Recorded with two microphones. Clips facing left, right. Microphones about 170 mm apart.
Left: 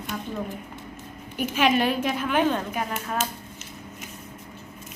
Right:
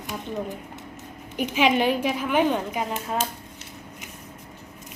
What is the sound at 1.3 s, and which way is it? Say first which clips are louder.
A woman's voice: right 1 dB; 15° right (ahead or behind).